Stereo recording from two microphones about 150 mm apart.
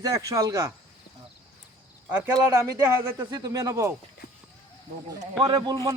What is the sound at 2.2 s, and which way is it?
Speech, 20° right (ahead or behind).